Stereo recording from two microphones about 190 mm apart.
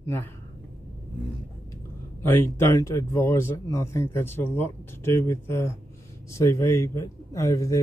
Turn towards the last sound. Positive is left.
turn(degrees=15)  # may be behind; listen again after turning